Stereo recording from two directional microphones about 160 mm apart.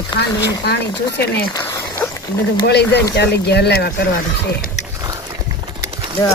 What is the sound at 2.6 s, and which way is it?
Speech, 90° left.